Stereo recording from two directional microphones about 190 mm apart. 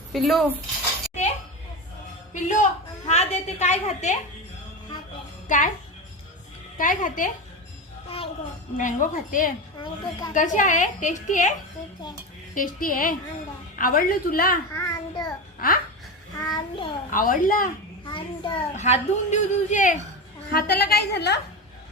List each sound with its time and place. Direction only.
0.1 s speech: centre (ahead or behind)
2.3 s a child's voice: 40° left (ahead or behind)
5.5 s a child's voice: 45° left (ahead or behind)
6.7 s a woman's voice: 45° left (ahead or behind)
8.8 s a woman's voice: 45° left (ahead or behind)
9.7 s speech: 20° left (ahead or behind)
10.3 s a child's voice: 40° left (ahead or behind)
12.5 s a woman's voice: 45° left (ahead or behind)
14.7 s a child's voice: 20° left (ahead or behind)
15.6 s a woman's voice: 50° left (ahead or behind)
16.3 s a child's voice: 20° left (ahead or behind)
17.1 s a woman's voice: 45° left (ahead or behind)
18.0 s a child's voice: 25° left (ahead or behind); by 21.3 s 60° left (ahead or behind)